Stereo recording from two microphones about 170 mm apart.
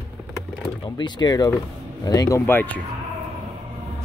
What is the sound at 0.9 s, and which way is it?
Speech, 25° left (ahead or behind).